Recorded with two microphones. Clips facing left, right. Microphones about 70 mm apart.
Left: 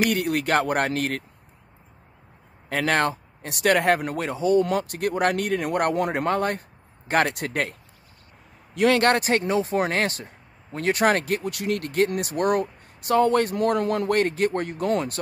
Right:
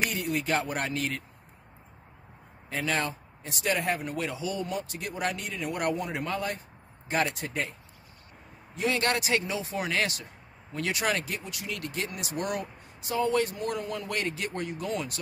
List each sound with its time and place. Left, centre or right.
0.1 s speech: left
2.7 s speech: left
4.6 s speech: left
7.2 s speech: left
8.7 s a man's voice: left
9.0 s speech: left